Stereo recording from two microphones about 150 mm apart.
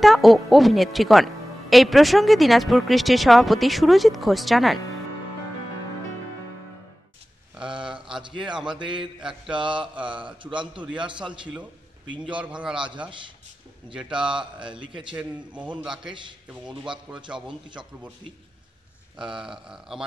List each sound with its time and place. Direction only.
0.0 s speech: centre (ahead or behind)
7.6 s a sound: 35° right (ahead or behind)
8.2 s a man's voice: 30° right (ahead or behind)
12.4 s a man's voice: 10° right (ahead or behind)
14.1 s speech: 5° right (ahead or behind)
14.6 s a man's voice: 35° right (ahead or behind)
15.1 s a man's voice: 10° right (ahead or behind)
19.3 s speech: 5° right (ahead or behind)